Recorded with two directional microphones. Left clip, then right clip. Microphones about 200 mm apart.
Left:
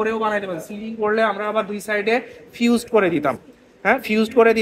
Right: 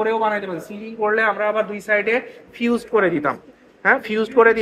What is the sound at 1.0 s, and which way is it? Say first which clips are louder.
Speech: right 1 dB; 45° left (ahead or behind).